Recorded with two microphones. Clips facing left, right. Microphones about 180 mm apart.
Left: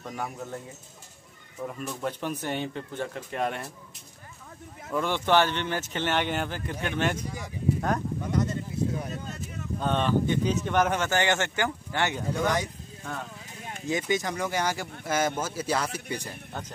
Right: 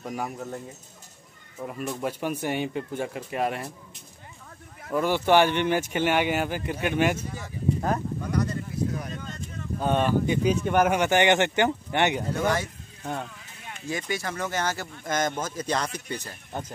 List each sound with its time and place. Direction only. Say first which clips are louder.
0.1 s speech: right 2 dB; 5° right (ahead or behind)
1.6 s speech: right 2 dB; 10° right (ahead or behind)
4.9 s speech: right 3 dB; 5° right (ahead or behind)
8.2 s a sound: even; 25° left (ahead or behind)
9.1 s a sound: even; 5° left (ahead or behind)
9.8 s speech: right 2 dB; 10° right (ahead or behind)
12.3 s speech: right 1 dB; 15° left (ahead or behind)
13.8 s speech: left 3 dB; 20° left (ahead or behind)